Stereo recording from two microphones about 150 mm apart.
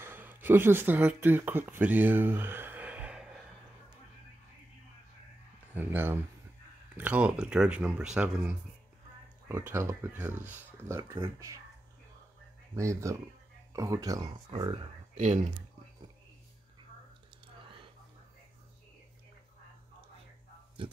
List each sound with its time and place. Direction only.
0.0 s speech: 15° right (ahead or behind)
5.8 s speech: 15° right (ahead or behind)
12.7 s speech: 20° right (ahead or behind)
15.1 s speech: 50° right (ahead or behind)
20.8 s speech: 35° right (ahead or behind)